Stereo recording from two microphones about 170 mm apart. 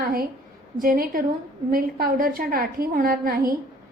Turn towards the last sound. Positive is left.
turn(degrees=-60)  # may be behind; listen again after turning